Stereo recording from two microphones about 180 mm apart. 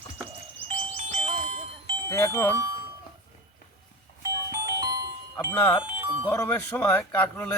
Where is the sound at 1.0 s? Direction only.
40° right (ahead or behind).